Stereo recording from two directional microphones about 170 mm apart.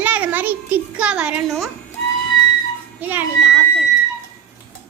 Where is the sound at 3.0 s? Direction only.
10° right (ahead or behind).